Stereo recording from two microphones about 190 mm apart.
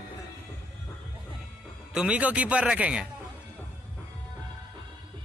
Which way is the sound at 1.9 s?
5° right (ahead or behind).